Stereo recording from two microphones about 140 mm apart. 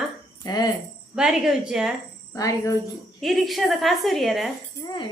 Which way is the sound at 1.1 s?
5° right (ahead or behind).